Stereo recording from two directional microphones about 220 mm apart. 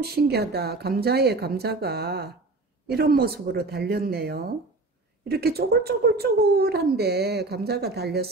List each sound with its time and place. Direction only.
0.0 s speech: 45° right (ahead or behind)